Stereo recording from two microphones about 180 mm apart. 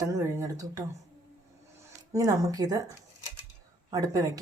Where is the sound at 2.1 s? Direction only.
20° right (ahead or behind).